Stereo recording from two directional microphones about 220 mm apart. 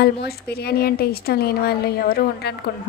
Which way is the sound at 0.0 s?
45° left (ahead or behind).